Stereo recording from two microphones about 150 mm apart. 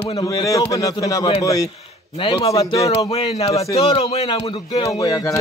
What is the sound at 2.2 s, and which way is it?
Speech, 40° left (ahead or behind).